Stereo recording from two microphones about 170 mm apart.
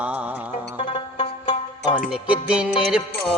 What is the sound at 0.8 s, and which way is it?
Music, 30° left (ahead or behind).